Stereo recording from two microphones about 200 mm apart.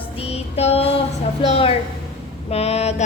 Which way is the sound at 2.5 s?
30° left (ahead or behind).